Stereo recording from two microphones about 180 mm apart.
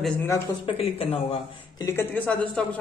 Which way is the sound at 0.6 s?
35° left (ahead or behind).